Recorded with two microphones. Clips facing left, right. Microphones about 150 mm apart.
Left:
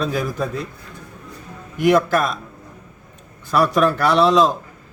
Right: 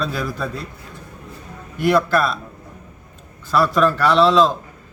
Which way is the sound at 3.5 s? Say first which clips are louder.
Even; 15° left (ahead or behind).